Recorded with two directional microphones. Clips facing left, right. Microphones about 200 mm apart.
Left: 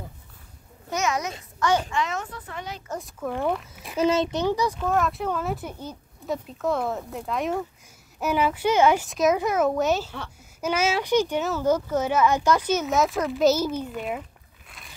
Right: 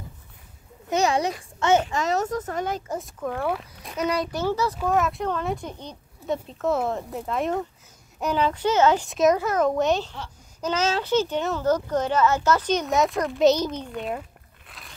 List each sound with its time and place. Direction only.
0.9 s a child's voice: 30° right (ahead or behind)
2.9 s a child's voice: centre (ahead or behind)
4.0 s a child's voice: 25° left (ahead or behind)
4.7 s a child's voice: centre (ahead or behind)
9.1 s a child's voice: centre (ahead or behind)